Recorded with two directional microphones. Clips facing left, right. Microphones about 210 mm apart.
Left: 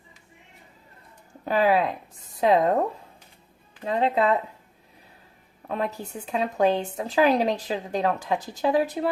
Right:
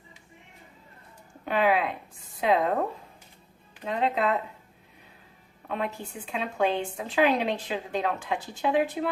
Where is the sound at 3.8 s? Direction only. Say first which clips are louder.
Left 3 dB; 35° left (ahead or behind).